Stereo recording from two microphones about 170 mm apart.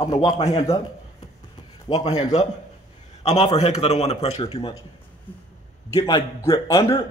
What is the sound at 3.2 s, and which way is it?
A man's voice, 40° left (ahead or behind).